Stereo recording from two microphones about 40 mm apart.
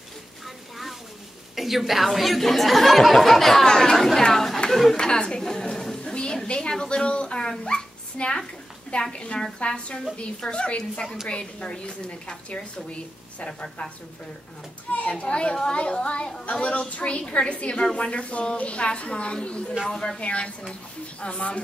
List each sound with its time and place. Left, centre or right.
1.5 s speech: centre
3.6 s speech: centre
3.9 s chatter: centre
4.6 s a woman's voice: centre
4.9 s a sound: centre
6.1 s dog: left
8.9 s a woman's voice: left
14.9 s a woman's voice: left
19.9 s speech: centre
20.2 s a woman's voice: left